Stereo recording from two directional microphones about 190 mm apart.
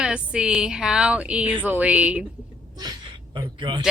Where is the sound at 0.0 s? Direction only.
5° right (ahead or behind).